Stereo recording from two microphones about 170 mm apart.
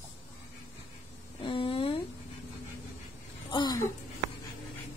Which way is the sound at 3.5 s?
25° left (ahead or behind).